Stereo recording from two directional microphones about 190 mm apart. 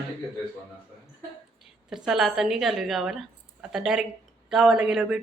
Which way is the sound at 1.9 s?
Centre (ahead or behind).